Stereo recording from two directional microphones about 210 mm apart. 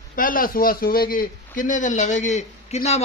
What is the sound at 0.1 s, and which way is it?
A man's voice, 40° left (ahead or behind).